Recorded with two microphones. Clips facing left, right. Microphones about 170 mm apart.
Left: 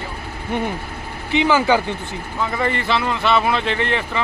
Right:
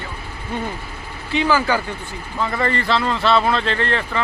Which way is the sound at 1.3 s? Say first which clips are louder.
Left 2 dB; 20° left (ahead or behind).